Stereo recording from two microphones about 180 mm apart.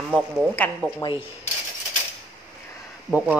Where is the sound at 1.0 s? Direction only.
25° left (ahead or behind).